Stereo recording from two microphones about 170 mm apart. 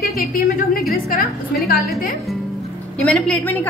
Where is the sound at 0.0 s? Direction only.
60° left (ahead or behind).